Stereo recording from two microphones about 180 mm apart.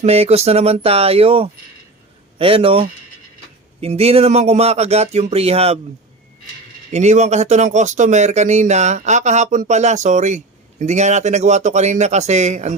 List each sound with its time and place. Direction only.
0.0 s speech: 35° right (ahead or behind)
6.9 s speech: 40° right (ahead or behind)